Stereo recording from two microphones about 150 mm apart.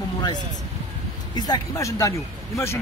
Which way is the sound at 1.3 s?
25° left (ahead or behind).